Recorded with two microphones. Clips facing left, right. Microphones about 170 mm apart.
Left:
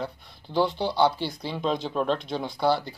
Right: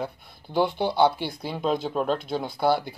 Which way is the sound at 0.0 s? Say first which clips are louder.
Right 1 dB; 10° right (ahead or behind).